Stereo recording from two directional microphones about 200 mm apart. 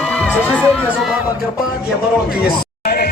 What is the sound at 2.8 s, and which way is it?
Music, 50° left (ahead or behind).